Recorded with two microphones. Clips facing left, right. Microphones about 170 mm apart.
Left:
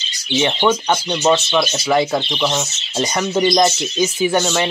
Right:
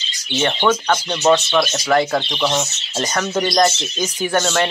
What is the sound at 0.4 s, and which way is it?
Speech, 15° left (ahead or behind).